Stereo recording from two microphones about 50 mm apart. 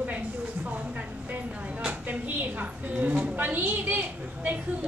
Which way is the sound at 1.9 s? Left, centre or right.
Right.